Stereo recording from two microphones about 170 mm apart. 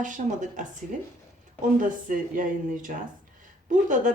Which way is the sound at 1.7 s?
50° right (ahead or behind).